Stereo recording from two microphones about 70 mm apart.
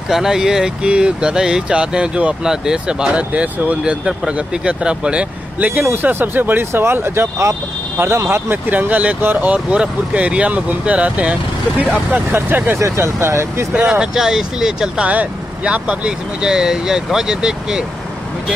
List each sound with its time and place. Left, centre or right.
0.1 s speech: centre; by 8.5 s right
8.6 s speech: right
12.1 s speech: right
12.7 s speech: right
13.7 s speech: centre
15.0 s speech: centre